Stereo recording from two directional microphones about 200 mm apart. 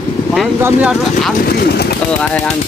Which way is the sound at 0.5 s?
10° right (ahead or behind).